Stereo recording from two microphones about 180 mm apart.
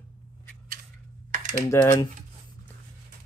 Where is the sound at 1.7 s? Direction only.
20° left (ahead or behind).